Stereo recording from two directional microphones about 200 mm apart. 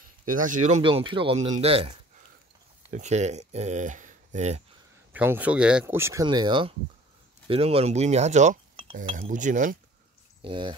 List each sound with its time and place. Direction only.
0.3 s speech: 40° right (ahead or behind)
0.8 s speech: 25° right (ahead or behind)
2.9 s speech: 35° right (ahead or behind)
5.1 s speech: 10° right (ahead or behind); by 9.8 s 40° right (ahead or behind)
10.4 s speech: 25° right (ahead or behind)